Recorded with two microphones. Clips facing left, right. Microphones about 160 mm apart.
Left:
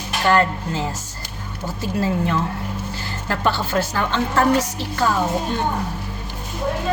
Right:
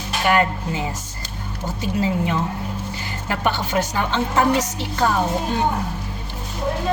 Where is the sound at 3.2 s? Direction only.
15° right (ahead or behind).